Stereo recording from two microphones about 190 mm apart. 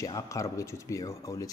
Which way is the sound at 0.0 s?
15° left (ahead or behind).